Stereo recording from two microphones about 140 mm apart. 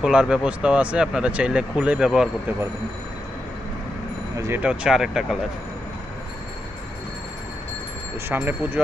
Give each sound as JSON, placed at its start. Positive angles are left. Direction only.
{"t": 0.0, "sound": "speech", "side_deg": -5}
{"t": 4.4, "sound": "speech", "side_deg": -20}
{"t": 4.6, "sound": "speech", "side_deg": -5}
{"t": 8.3, "sound": "speech", "side_deg": -15}